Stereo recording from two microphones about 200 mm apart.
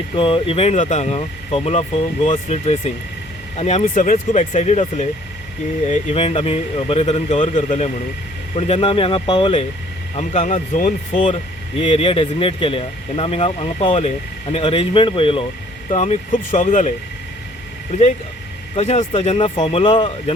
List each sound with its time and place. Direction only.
0.2 s speech: 25° left (ahead or behind)
11.8 s speech: 25° left (ahead or behind)
15.9 s speech: 35° left (ahead or behind)
18.8 s speech: 35° left (ahead or behind)